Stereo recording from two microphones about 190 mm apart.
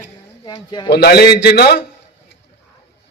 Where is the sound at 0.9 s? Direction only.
60° left (ahead or behind).